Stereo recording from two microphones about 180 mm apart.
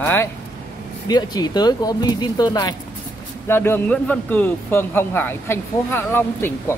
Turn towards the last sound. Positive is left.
turn(degrees=15)  # may be behind; listen again after turning